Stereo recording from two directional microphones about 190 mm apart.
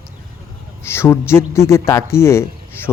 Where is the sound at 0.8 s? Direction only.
15° left (ahead or behind).